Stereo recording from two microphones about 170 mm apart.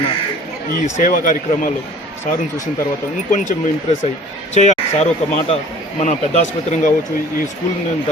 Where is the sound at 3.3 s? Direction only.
45° left (ahead or behind).